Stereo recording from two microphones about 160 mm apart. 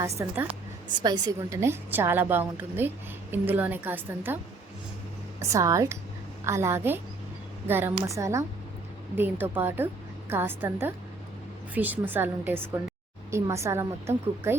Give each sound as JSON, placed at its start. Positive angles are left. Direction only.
{"t": 0.2, "sound": "a woman's voice", "side_deg": -15}
{"t": 0.9, "sound": "a woman's voice", "side_deg": -25}
{"t": 5.4, "sound": "a woman's voice", "side_deg": -20}